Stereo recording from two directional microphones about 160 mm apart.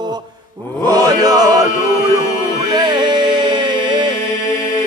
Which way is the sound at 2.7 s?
30° right (ahead or behind).